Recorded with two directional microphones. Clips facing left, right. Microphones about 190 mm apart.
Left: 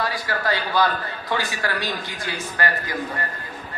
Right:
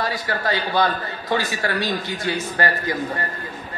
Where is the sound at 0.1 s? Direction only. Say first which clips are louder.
Right 1 dB; 20° right (ahead or behind).